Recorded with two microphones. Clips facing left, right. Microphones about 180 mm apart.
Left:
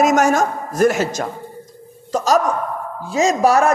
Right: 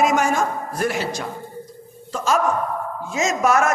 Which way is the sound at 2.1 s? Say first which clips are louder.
Left 5 dB; 40° left (ahead or behind).